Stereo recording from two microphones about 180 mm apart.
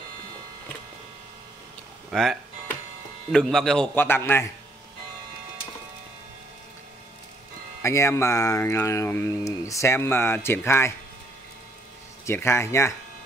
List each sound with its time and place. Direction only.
2.0 s a man's voice: centre (ahead or behind)
7.8 s speech: 15° left (ahead or behind)
12.3 s speech: 15° left (ahead or behind)